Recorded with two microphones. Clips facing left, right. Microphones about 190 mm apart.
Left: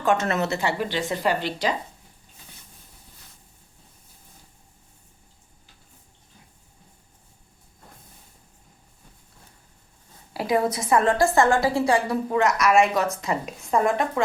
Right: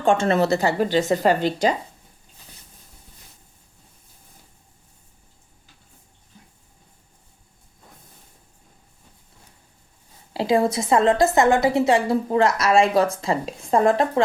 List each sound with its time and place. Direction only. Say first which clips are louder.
0.0 s a woman's voice: right 4 dB; 30° right (ahead or behind)
10.3 s a woman's voice: right 3 dB; 25° right (ahead or behind)